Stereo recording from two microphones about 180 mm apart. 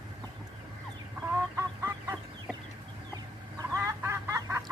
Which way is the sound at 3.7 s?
15° right (ahead or behind).